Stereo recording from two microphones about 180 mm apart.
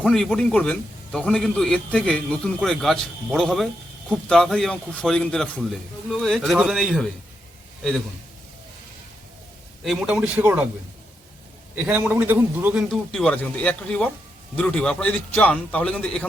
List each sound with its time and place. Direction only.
0.0 s a man's voice: centre (ahead or behind)
9.8 s a man's voice: centre (ahead or behind)
11.7 s a man's voice: 10° right (ahead or behind)
12.9 s a man's voice: 5° left (ahead or behind)